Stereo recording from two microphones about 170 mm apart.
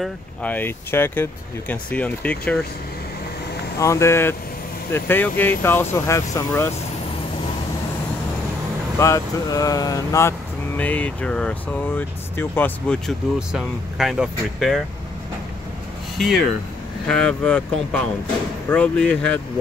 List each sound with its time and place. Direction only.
0.0 s speech: 10° left (ahead or behind)
3.8 s speech: 15° left (ahead or behind)
8.9 s speech: 20° left (ahead or behind)
10.8 s speech: 10° left (ahead or behind)
16.2 s speech: centre (ahead or behind)